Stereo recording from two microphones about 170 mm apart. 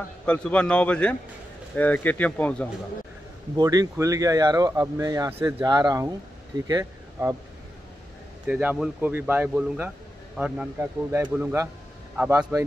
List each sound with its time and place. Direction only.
0.2 s speech: 5° left (ahead or behind)
3.5 s speech: 20° right (ahead or behind)
8.5 s a man's voice: 10° right (ahead or behind)